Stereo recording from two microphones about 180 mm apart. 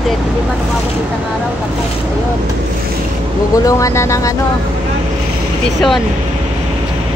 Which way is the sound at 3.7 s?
20° left (ahead or behind).